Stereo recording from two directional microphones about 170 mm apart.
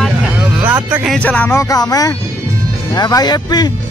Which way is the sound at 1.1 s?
10° left (ahead or behind).